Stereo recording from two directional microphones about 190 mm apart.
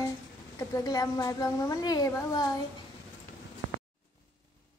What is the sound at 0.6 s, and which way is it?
A woman's voice, 20° left (ahead or behind).